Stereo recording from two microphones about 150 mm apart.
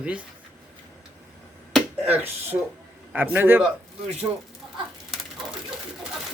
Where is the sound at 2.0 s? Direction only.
10° right (ahead or behind).